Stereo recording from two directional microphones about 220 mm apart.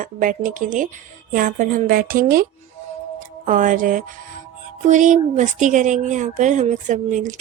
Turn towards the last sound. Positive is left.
turn(degrees=-35)  # may be behind; listen again after turning